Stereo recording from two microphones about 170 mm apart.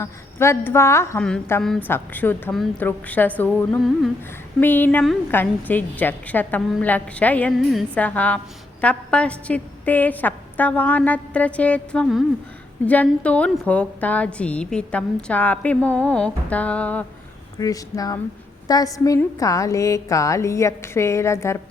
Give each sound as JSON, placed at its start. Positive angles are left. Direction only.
{"t": 0.0, "sound": "a woman's voice", "side_deg": 15}
{"t": 17.6, "sound": "a woman's voice", "side_deg": 20}